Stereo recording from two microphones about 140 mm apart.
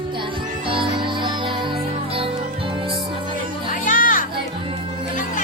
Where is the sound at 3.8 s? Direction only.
75° left (ahead or behind).